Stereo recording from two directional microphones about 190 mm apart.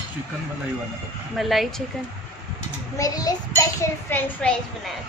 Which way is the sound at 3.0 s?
20° left (ahead or behind).